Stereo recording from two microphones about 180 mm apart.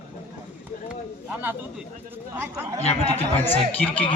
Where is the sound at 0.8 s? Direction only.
10° right (ahead or behind).